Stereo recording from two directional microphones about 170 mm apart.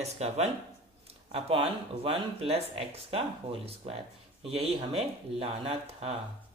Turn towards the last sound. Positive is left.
turn(degrees=-35)  # may be behind; listen again after turning